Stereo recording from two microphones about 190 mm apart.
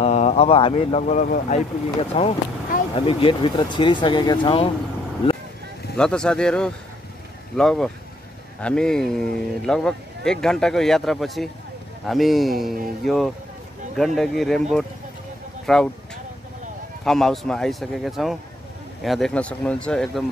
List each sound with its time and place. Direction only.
0.0 s speech: 35° left (ahead or behind)
5.2 s vehicle: 30° left (ahead or behind)
5.9 s speech: 5° left (ahead or behind)
17.0 s speech: centre (ahead or behind)